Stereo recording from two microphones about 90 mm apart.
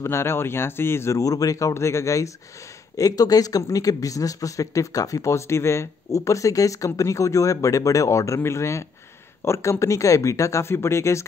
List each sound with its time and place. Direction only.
0.0 s speech: 30° left (ahead or behind)